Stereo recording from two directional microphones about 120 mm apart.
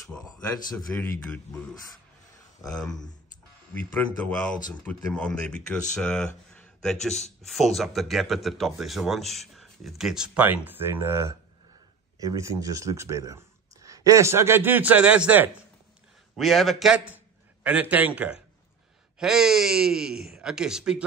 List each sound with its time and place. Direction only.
1.0 s speech: 10° left (ahead or behind)
2.6 s speech: 5° left (ahead or behind); by 15.5 s 15° right (ahead or behind)
16.3 s a man's voice: centre (ahead or behind)